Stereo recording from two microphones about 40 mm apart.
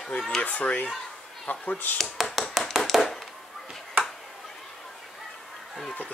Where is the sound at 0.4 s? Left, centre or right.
Left.